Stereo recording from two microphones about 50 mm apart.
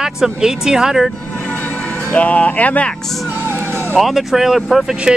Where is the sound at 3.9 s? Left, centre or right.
Centre.